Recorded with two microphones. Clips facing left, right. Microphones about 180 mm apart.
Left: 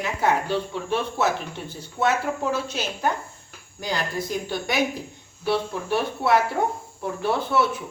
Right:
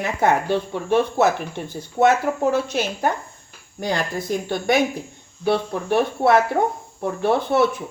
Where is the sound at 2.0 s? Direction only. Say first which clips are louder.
Right 7 dB; 35° right (ahead or behind).